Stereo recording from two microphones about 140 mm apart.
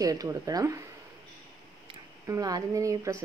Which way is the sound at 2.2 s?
25° right (ahead or behind).